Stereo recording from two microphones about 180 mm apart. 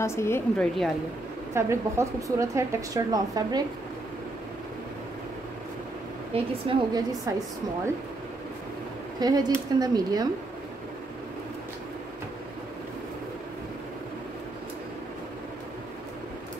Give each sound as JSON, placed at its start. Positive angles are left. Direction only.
{"t": 0.0, "sound": "a woman's voice", "side_deg": 15}
{"t": 1.5, "sound": "a woman's voice", "side_deg": -15}
{"t": 6.7, "sound": "a woman's voice", "side_deg": -20}
{"t": 9.2, "sound": "a woman's voice", "side_deg": -20}